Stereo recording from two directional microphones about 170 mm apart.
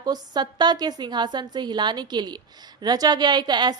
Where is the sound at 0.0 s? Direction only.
25° right (ahead or behind).